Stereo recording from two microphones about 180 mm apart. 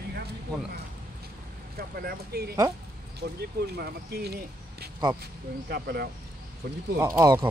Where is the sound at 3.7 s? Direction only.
60° right (ahead or behind).